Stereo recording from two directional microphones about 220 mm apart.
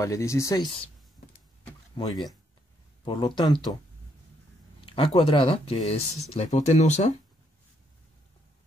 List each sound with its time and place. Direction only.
0.0 s speech: 15° left (ahead or behind)
2.0 s speech: 20° left (ahead or behind)
4.8 s speech: 25° left (ahead or behind)